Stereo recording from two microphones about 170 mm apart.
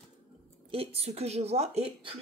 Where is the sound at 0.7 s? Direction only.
35° right (ahead or behind).